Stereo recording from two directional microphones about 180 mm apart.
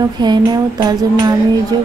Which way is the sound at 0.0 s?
25° right (ahead or behind).